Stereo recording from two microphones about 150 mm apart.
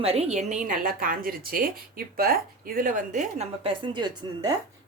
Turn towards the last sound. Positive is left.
turn(degrees=-25)  # may be behind; listen again after turning